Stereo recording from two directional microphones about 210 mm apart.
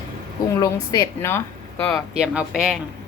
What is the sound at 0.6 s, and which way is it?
Speech, 15° left (ahead or behind).